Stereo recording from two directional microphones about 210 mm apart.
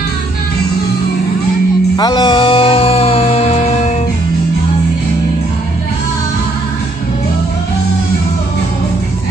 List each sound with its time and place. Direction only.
2.0 s music: 20° left (ahead or behind)